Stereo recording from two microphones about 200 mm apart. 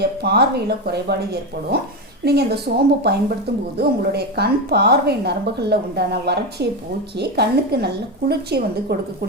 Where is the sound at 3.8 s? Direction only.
55° right (ahead or behind).